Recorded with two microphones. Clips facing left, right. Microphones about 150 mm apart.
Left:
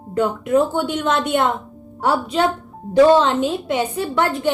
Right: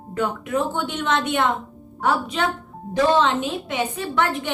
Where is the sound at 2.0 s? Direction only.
35° left (ahead or behind).